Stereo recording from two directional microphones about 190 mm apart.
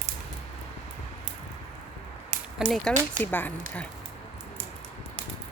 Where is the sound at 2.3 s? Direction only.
30° right (ahead or behind).